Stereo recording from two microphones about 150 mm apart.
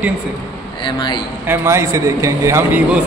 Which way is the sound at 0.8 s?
30° left (ahead or behind).